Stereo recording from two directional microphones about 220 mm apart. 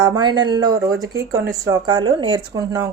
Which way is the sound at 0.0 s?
20° right (ahead or behind).